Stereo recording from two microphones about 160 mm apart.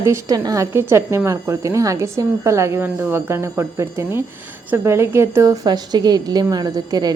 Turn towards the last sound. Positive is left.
turn(degrees=-25)  # may be behind; listen again after turning